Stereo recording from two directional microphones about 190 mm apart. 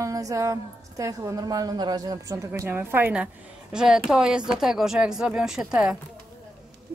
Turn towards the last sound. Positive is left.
turn(degrees=-5)  # may be behind; listen again after turning